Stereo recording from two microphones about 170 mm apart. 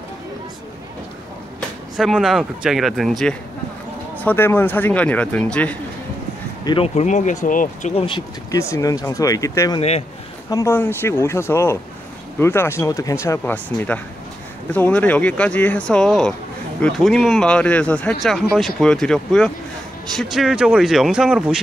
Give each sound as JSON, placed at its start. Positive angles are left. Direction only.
{"t": 2.0, "sound": "speech", "side_deg": 0}
{"t": 6.6, "sound": "speech", "side_deg": 30}
{"t": 7.0, "sound": "speech", "side_deg": 45}
{"t": 7.9, "sound": "speech", "side_deg": 35}
{"t": 8.5, "sound": "speech", "side_deg": 15}
{"t": 9.8, "sound": "speech", "side_deg": 40}
{"t": 10.5, "sound": "speech", "side_deg": 15}